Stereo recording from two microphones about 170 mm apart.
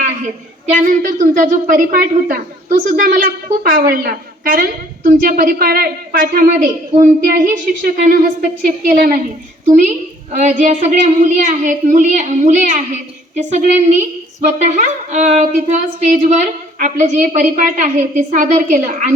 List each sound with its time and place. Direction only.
1.0 s a woman's voice: 50° right (ahead or behind)